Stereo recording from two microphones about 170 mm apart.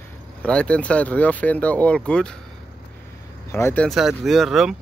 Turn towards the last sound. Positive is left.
turn(degrees=0)  # may be behind; listen again after turning